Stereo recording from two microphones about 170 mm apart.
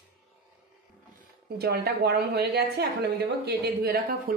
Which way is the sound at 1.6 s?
65° right (ahead or behind).